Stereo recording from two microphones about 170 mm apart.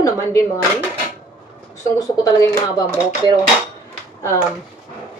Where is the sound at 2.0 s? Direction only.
20° left (ahead or behind).